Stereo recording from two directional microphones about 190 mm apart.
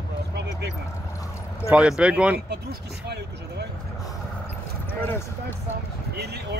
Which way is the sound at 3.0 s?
60° right (ahead or behind).